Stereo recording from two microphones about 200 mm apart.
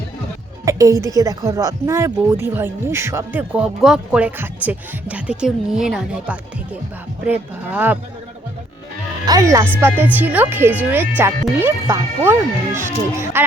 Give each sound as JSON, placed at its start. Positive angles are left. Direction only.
{"t": 0.6, "sound": "speech", "side_deg": -15}
{"t": 9.2, "sound": "speech", "side_deg": -15}